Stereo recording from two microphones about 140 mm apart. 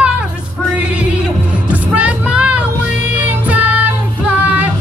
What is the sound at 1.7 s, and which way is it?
Music, 10° right (ahead or behind).